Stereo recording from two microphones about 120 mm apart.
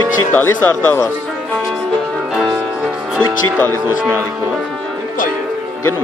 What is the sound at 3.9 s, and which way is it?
Speech, 20° right (ahead or behind).